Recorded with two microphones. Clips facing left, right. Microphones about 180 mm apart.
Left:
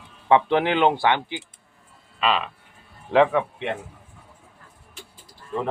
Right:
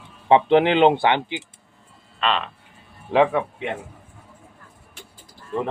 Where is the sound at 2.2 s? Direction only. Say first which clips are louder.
Even; 5° left (ahead or behind).